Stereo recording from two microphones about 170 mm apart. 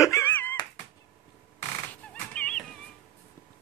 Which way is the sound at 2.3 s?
5° left (ahead or behind).